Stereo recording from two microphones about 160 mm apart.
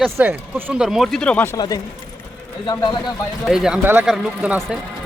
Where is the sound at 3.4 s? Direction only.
5° right (ahead or behind).